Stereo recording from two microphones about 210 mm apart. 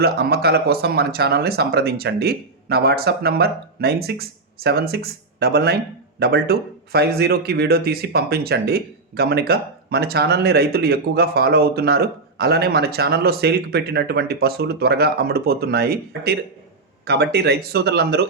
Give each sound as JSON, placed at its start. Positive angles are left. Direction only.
{"t": 0.0, "sound": "a man's voice", "side_deg": -50}